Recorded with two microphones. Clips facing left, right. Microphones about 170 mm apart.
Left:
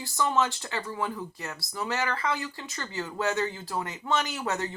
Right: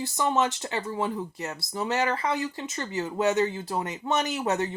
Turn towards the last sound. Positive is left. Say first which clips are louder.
# right 4 dB
turn(degrees=-20)  # may be behind; listen again after turning